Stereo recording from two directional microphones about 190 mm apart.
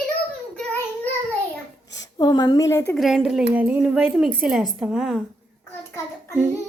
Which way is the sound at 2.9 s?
Centre (ahead or behind).